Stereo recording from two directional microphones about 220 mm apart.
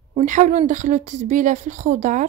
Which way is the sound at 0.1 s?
35° right (ahead or behind).